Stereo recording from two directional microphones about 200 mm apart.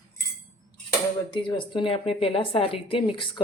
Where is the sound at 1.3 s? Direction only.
25° left (ahead or behind).